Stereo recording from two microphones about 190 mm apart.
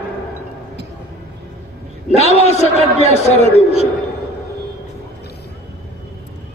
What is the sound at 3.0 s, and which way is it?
Speech, 35° left (ahead or behind).